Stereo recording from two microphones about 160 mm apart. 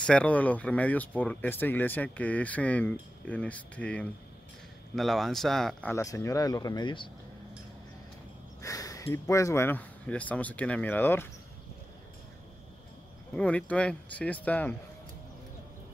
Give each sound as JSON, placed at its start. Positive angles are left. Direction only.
{"t": 0.0, "sound": "speech", "side_deg": 5}
{"t": 5.9, "sound": "speech", "side_deg": 20}
{"t": 8.6, "sound": "speech", "side_deg": 20}
{"t": 13.3, "sound": "speech", "side_deg": 5}